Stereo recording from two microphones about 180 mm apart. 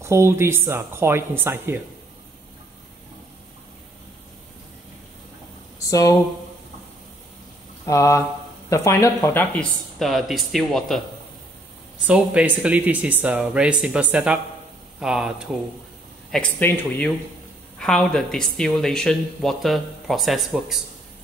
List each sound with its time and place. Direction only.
0.0 s speech: 15° right (ahead or behind)
5.8 s a sound: 20° left (ahead or behind)
7.8 s speech: 15° left (ahead or behind); by 11.0 s centre (ahead or behind)
12.1 s speech: 5° right (ahead or behind)
16.3 s speech: 10° left (ahead or behind)